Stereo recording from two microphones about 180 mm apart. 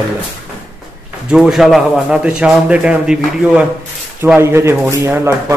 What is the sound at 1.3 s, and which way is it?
A man's voice, 5° right (ahead or behind).